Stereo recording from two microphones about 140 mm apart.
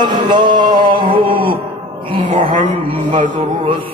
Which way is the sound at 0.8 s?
35° right (ahead or behind).